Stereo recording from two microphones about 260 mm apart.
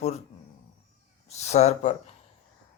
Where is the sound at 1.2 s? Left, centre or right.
Left.